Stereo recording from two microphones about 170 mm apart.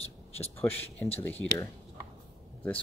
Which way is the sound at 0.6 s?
10° left (ahead or behind).